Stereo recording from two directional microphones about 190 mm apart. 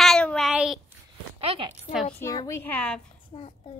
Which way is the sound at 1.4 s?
30° right (ahead or behind).